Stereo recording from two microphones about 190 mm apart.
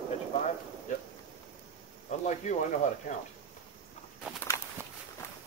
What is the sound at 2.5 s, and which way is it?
Speech, 40° left (ahead or behind).